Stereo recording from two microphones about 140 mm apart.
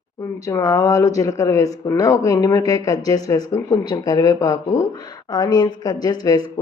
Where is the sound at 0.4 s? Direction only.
25° left (ahead or behind).